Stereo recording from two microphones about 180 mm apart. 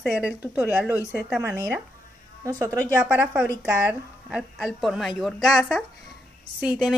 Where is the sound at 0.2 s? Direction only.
5° right (ahead or behind).